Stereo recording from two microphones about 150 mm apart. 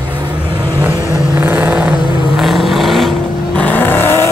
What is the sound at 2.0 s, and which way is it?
Vehicle, 30° left (ahead or behind).